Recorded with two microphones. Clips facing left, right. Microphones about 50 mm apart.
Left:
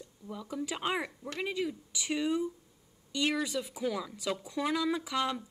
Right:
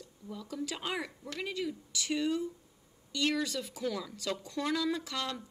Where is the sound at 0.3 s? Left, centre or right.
Centre.